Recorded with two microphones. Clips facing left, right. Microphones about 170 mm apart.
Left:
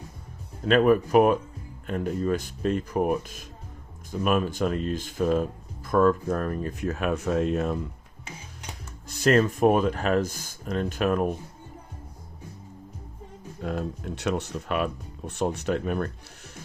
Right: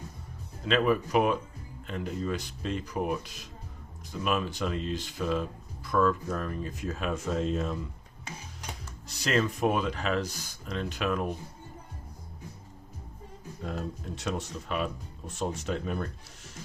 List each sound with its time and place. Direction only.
0.6 s speech: 50° left (ahead or behind)
9.0 s speech: 50° left (ahead or behind)
13.6 s speech: 60° left (ahead or behind)